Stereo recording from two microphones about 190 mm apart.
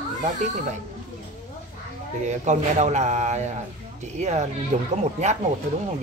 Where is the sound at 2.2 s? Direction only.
40° right (ahead or behind).